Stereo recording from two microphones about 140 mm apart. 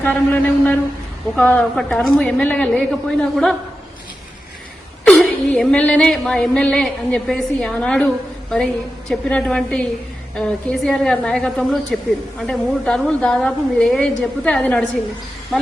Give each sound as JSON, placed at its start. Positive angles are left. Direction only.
{"t": 0.0, "sound": "a woman's voice", "side_deg": 10}
{"t": 5.0, "sound": "a woman's voice", "side_deg": 5}